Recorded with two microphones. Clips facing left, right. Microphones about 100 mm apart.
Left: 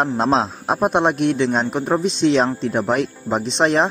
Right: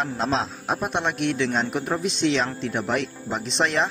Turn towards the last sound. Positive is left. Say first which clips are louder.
# left 6 dB
turn(degrees=40)  # may be behind; listen again after turning